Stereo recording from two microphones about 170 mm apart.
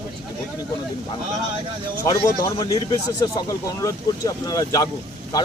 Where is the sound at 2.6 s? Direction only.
25° left (ahead or behind).